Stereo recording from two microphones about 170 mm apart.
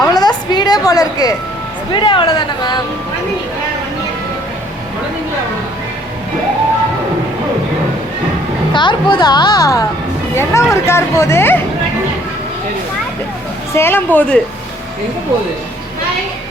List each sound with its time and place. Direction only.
0.0 s a sound: 25° left (ahead or behind)
1.9 s a woman's voice: 30° left (ahead or behind)
8.7 s a woman's voice: 25° left (ahead or behind)
13.7 s speech: 15° left (ahead or behind)